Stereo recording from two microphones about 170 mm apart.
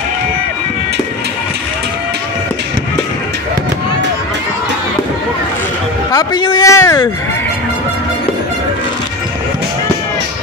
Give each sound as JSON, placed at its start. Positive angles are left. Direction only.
{"t": 6.1, "sound": "speech", "side_deg": 25}